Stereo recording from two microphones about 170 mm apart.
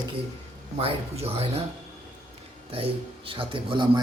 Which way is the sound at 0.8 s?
35° right (ahead or behind).